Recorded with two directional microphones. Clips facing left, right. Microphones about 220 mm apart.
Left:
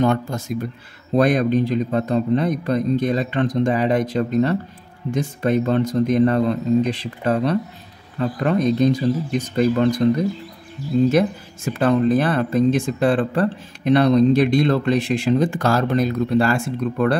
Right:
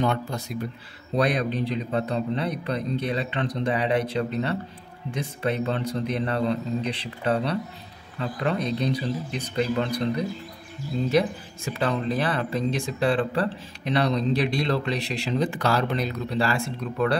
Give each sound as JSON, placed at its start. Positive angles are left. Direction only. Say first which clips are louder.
{"t": 0.0, "sound": "speech", "louder": "left 6 dB", "side_deg": 45}
{"t": 11.7, "sound": "speech", "louder": "left 9 dB", "side_deg": 50}